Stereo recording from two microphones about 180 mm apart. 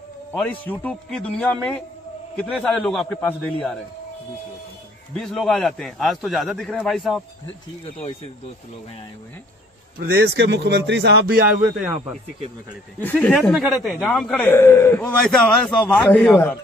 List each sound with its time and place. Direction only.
0.3 s a man's voice: 10° left (ahead or behind)
5.1 s a man's voice: centre (ahead or behind)
7.8 s speech: 35° left (ahead or behind)
9.9 s a man's voice: 60° right (ahead or behind)
13.0 s a man's voice: 10° left (ahead or behind)